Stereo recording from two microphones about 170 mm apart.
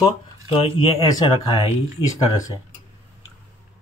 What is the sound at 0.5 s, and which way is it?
Speech, 35° left (ahead or behind).